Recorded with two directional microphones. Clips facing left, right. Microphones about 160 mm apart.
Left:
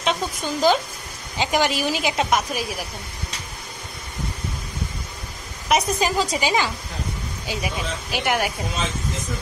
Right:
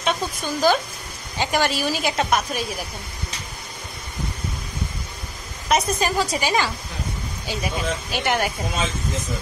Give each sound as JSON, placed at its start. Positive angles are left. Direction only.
{"t": 0.0, "sound": "a woman's voice", "side_deg": 20}
{"t": 5.7, "sound": "a woman's voice", "side_deg": 15}